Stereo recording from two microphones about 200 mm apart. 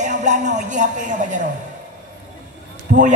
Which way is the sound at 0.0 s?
35° right (ahead or behind).